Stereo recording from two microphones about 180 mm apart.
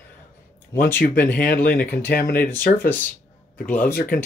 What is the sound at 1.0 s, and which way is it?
Speech, 10° left (ahead or behind).